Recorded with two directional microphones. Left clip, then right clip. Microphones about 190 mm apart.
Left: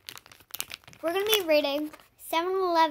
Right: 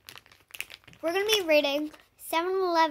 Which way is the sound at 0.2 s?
40° left (ahead or behind).